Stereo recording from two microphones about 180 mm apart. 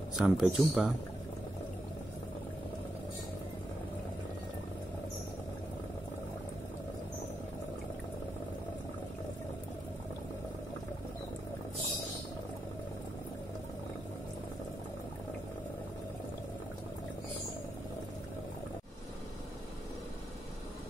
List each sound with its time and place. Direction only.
0.1 s a man's voice: 5° right (ahead or behind)